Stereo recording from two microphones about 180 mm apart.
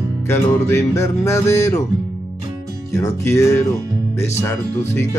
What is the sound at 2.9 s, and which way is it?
Music, 15° left (ahead or behind).